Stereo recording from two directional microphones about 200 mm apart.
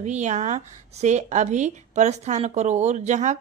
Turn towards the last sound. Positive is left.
turn(degrees=-35)  # may be behind; listen again after turning